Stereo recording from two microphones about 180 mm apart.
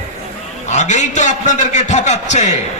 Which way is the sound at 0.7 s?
40° left (ahead or behind).